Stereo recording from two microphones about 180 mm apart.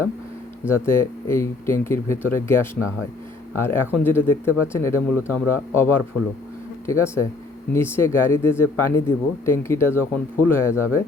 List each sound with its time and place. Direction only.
0.7 s speech: 15° left (ahead or behind)